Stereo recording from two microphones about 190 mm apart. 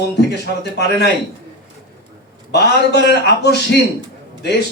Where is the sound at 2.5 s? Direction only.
60° left (ahead or behind).